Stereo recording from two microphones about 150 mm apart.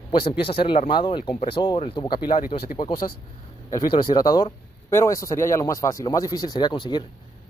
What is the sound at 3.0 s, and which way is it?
Speech, 45° left (ahead or behind).